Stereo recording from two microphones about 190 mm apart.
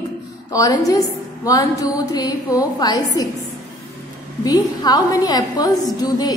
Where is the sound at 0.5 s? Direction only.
20° left (ahead or behind).